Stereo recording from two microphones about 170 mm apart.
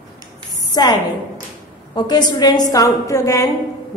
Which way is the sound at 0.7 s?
20° left (ahead or behind).